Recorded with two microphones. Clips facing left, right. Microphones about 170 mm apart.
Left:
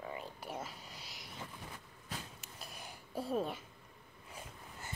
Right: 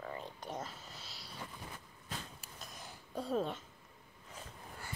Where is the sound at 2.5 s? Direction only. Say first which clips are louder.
Left 2 dB; 10° left (ahead or behind).